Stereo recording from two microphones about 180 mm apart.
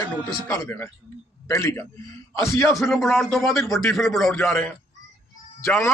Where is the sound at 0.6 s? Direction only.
15° left (ahead or behind).